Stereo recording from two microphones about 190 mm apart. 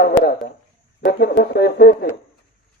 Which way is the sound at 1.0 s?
55° left (ahead or behind).